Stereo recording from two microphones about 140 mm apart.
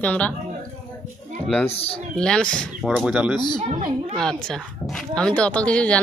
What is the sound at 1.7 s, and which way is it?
Speech, 45° left (ahead or behind).